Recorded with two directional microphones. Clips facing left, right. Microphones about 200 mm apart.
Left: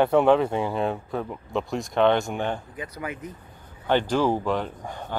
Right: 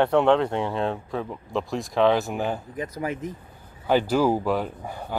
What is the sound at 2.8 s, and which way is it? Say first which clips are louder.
Speech: right 4 dB; 35° right (ahead or behind).